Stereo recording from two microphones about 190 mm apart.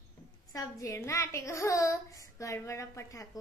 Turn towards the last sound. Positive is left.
turn(degrees=15)  # may be behind; listen again after turning